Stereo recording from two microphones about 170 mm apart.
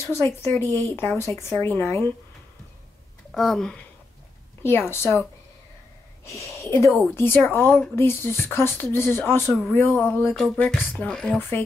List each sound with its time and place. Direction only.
0.4 s speech: 15° left (ahead or behind)
3.3 s speech: 5° left (ahead or behind)
4.6 s speech: 15° left (ahead or behind)
6.2 s speech: 15° left (ahead or behind)